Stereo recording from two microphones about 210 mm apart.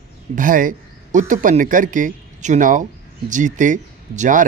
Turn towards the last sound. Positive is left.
turn(degrees=-35)  # may be behind; listen again after turning